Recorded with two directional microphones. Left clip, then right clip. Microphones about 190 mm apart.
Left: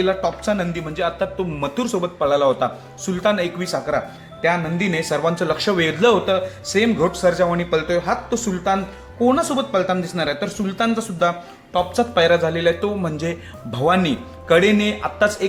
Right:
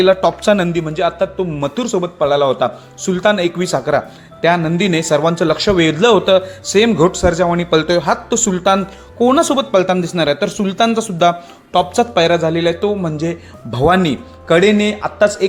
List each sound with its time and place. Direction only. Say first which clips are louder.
0.0 s speech: right 8 dB; 40° right (ahead or behind); by 13.7 s 20° right (ahead or behind)
13.7 s speech: right 5 dB; 30° right (ahead or behind)